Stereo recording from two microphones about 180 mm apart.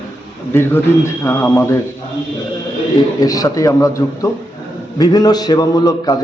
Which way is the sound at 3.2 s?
20° left (ahead or behind).